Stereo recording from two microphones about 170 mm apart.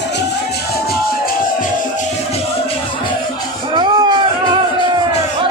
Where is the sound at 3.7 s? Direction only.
30° right (ahead or behind).